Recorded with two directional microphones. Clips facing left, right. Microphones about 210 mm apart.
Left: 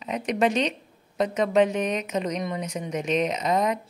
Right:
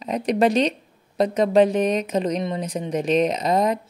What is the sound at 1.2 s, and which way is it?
A woman's voice, 35° right (ahead or behind).